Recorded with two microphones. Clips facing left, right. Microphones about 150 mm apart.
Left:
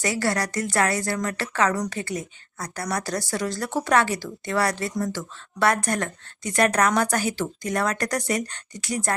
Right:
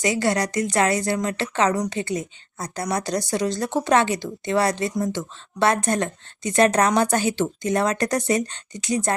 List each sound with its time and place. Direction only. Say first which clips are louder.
0.0 s a woman's voice: right 3 dB; 20° right (ahead or behind)